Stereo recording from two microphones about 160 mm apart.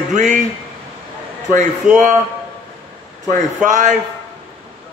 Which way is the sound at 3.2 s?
50° right (ahead or behind).